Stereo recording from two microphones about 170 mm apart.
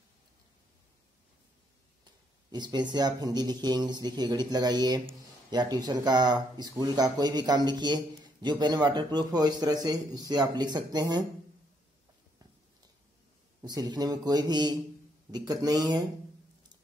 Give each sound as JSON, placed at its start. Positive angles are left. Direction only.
{"t": 2.5, "sound": "a man's voice", "side_deg": -25}
{"t": 13.6, "sound": "a man's voice", "side_deg": -25}